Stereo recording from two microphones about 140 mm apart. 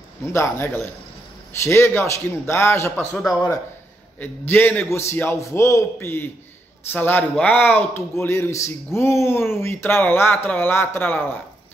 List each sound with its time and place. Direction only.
0.2 s speech: 20° left (ahead or behind)
4.2 s speech: 15° left (ahead or behind)